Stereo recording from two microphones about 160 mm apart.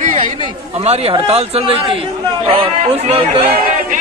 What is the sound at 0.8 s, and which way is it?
A man's voice, 40° right (ahead or behind).